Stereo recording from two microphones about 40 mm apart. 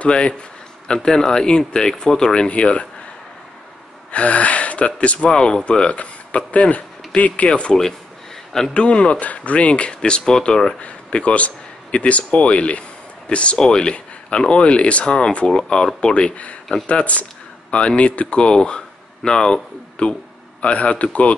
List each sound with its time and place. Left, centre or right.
0.0 s speech: left
4.1 s speech: left
5.3 s a man's voice: left
7.4 s speech: left
8.7 s speech: left
10.8 s a man's voice: left